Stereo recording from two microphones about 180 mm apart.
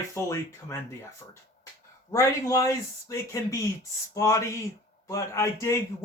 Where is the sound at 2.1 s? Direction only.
15° left (ahead or behind).